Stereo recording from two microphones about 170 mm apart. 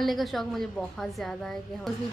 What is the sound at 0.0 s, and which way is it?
A woman's voice, centre (ahead or behind).